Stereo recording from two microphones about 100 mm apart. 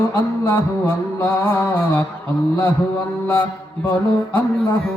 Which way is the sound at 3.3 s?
20° left (ahead or behind).